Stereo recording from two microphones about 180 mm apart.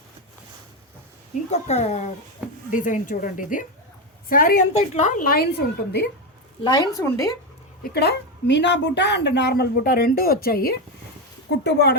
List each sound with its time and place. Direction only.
1.5 s a woman's voice: 35° left (ahead or behind)
4.7 s a woman's voice: 40° left (ahead or behind); by 6.1 s 65° left (ahead or behind)
6.7 s speech: 20° left (ahead or behind)
7.9 s a woman's voice: 65° left (ahead or behind)
11.6 s speech: 70° left (ahead or behind)